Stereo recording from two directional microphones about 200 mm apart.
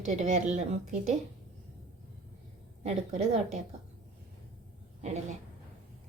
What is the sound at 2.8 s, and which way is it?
Speech, 35° right (ahead or behind).